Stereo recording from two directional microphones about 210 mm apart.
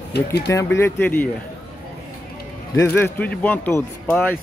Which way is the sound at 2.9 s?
10° left (ahead or behind).